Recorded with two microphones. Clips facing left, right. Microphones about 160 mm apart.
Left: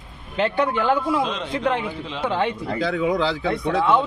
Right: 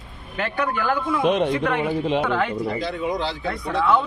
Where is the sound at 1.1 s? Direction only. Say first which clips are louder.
Right 4 dB; 55° right (ahead or behind).